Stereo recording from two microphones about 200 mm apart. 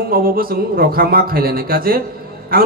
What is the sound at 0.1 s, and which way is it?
A man's voice, 45° right (ahead or behind).